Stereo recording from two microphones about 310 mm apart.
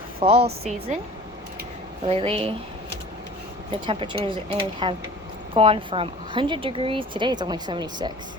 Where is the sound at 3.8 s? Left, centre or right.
Centre.